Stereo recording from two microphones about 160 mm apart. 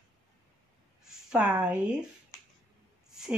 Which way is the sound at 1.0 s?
5° right (ahead or behind).